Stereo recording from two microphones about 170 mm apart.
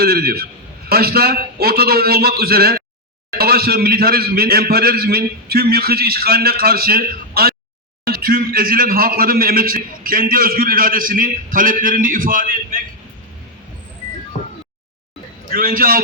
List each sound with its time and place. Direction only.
0.0 s a man's voice: 65° right (ahead or behind)
14.3 s a sound: 40° left (ahead or behind)
15.5 s a man's voice: 60° right (ahead or behind)